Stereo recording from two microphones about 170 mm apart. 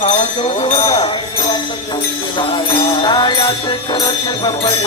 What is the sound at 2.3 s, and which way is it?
Music, 30° left (ahead or behind).